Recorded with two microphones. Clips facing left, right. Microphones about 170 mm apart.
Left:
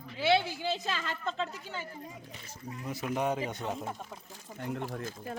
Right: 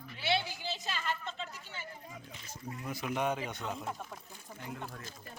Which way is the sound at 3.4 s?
40° left (ahead or behind).